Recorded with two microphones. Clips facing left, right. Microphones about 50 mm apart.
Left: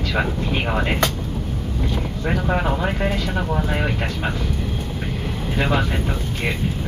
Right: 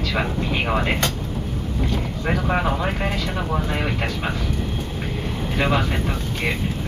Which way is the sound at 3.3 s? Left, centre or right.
Centre.